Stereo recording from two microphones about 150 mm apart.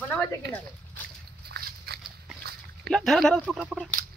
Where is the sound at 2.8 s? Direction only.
Centre (ahead or behind).